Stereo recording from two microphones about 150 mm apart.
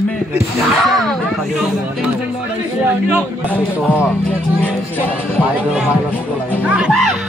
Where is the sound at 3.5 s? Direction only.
10° left (ahead or behind).